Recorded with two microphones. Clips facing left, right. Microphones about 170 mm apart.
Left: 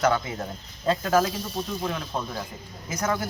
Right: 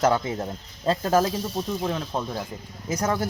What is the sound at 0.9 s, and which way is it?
Speech, 30° right (ahead or behind).